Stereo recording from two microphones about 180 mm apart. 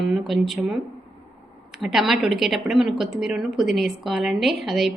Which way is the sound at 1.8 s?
Centre (ahead or behind).